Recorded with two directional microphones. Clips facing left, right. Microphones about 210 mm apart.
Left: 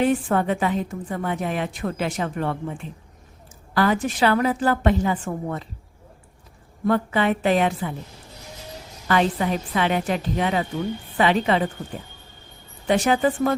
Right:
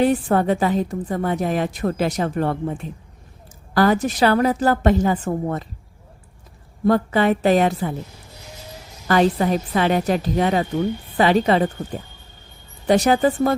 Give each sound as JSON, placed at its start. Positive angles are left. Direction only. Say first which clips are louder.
{"t": 0.0, "sound": "a woman's voice", "louder": "right 3 dB", "side_deg": -35}
{"t": 6.8, "sound": "a woman's voice", "louder": "right 4 dB", "side_deg": -40}
{"t": 9.0, "sound": "a woman's voice", "louder": "right 4 dB", "side_deg": -40}
{"t": 12.9, "sound": "a woman's voice", "louder": "right 3 dB", "side_deg": -40}